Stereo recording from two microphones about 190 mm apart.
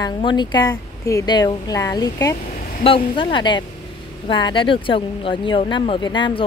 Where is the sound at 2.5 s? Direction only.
45° left (ahead or behind).